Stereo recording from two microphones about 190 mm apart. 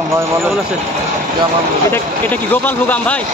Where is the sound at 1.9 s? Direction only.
10° left (ahead or behind).